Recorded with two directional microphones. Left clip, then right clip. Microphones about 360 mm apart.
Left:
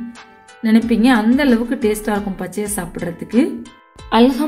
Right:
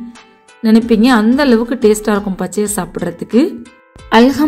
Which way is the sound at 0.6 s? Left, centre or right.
Centre.